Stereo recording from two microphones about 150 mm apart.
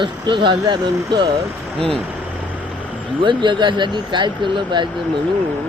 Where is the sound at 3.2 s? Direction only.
30° right (ahead or behind).